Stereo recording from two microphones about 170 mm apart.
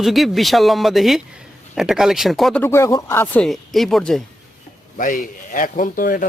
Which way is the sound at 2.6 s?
15° left (ahead or behind).